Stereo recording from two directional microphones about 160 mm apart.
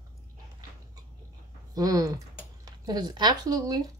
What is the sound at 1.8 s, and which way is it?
Speech, 20° right (ahead or behind).